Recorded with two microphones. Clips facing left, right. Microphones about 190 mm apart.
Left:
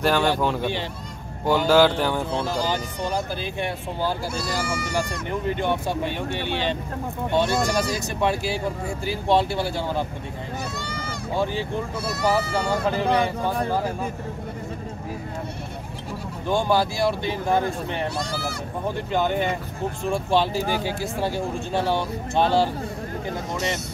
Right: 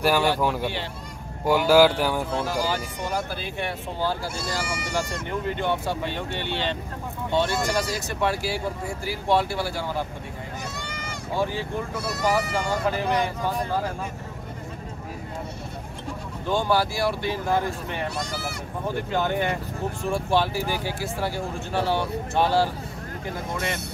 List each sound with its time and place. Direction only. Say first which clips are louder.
0.0 s speech: left 1 dB; 10° right (ahead or behind)
5.5 s speech: left 2 dB; 15° left (ahead or behind)
16.4 s speech: left 2 dB; 15° left (ahead or behind)
19.1 s speech: left 2 dB; 20° left (ahead or behind)